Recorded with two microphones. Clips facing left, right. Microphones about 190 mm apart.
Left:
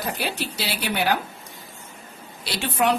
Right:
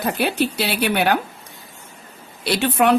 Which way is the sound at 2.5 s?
60° right (ahead or behind).